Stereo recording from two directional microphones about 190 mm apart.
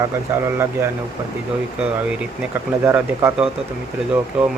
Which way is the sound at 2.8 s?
10° right (ahead or behind).